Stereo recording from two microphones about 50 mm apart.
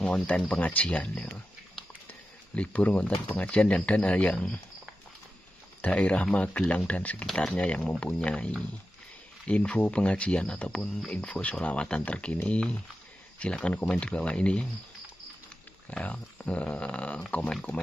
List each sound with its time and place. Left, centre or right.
0.0 s speech: left
0.8 s speech: centre
2.5 s speech: left
5.8 s speech: left
15.9 s speech: left